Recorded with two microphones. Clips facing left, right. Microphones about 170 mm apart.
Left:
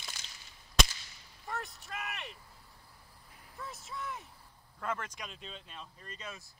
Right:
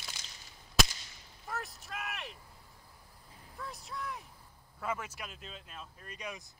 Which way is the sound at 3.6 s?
Centre (ahead or behind).